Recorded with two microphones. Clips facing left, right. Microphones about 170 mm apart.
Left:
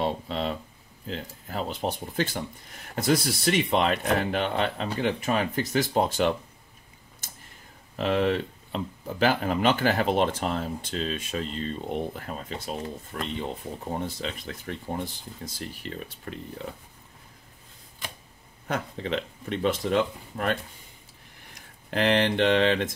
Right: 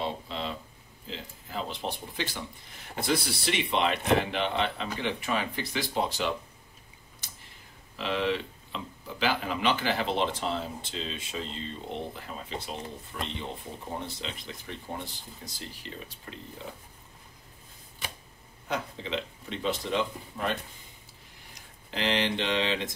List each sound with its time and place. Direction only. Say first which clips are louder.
0.0 s a sound: left 5 dB; 55° left (ahead or behind)
1.0 s speech: left 6 dB; 50° left (ahead or behind)
7.9 s speech: left 5 dB; 50° left (ahead or behind)
18.7 s speech: left 3 dB; 55° left (ahead or behind)
21.9 s mantra: left 6 dB; 55° left (ahead or behind)